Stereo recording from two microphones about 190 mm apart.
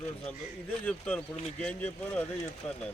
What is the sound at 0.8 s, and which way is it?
Speech, 10° left (ahead or behind).